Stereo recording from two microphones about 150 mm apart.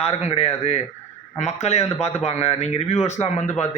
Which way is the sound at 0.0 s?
45° left (ahead or behind).